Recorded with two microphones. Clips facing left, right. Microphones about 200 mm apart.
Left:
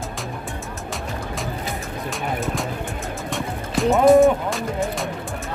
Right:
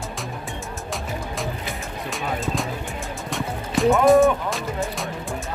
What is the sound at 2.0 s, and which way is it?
Music, centre (ahead or behind).